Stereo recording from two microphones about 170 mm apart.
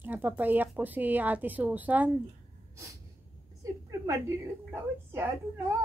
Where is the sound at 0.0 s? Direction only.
10° right (ahead or behind).